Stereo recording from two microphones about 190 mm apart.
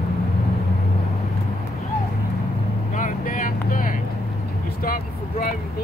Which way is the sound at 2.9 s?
45° left (ahead or behind).